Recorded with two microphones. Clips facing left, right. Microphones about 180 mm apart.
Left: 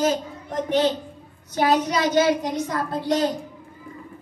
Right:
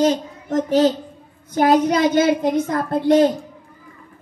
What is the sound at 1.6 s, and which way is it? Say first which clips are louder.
A woman's voice: right 5 dB; 50° right (ahead or behind).